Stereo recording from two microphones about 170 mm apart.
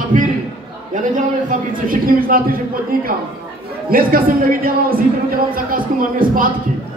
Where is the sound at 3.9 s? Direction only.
60° right (ahead or behind).